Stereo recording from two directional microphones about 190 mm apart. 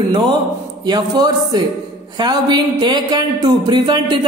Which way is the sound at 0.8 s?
20° right (ahead or behind).